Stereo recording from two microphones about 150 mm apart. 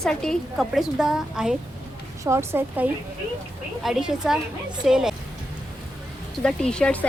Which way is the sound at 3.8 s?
5° right (ahead or behind).